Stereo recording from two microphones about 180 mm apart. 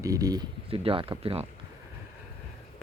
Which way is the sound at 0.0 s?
20° right (ahead or behind).